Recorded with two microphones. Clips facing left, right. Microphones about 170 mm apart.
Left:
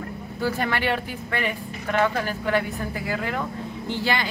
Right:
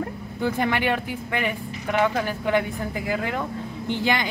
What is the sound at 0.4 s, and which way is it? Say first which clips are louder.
Speech: right 2 dB; 20° right (ahead or behind).